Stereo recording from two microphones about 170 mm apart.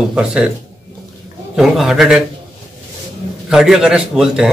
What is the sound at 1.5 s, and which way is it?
Speech, centre (ahead or behind).